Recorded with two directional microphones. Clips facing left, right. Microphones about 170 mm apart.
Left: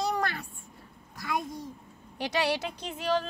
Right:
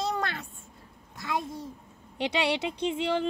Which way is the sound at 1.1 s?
25° right (ahead or behind).